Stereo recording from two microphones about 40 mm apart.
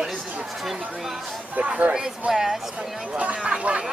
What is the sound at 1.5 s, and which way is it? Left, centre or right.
Speech, right.